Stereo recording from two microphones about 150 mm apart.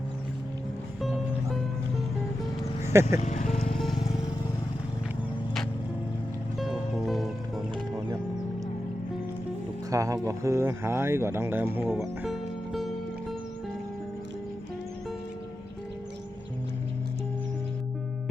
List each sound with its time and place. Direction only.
1.0 s music: centre (ahead or behind)
2.8 s speech: 15° right (ahead or behind)
3.2 s music: 50° left (ahead or behind)
3.8 s music: centre (ahead or behind)
6.6 s music: centre (ahead or behind)
9.9 s speech: 20° right (ahead or behind)
11.9 s music: centre (ahead or behind)